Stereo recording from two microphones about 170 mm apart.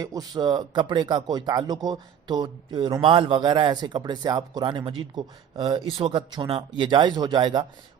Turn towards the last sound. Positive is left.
turn(degrees=-25)  # may be behind; listen again after turning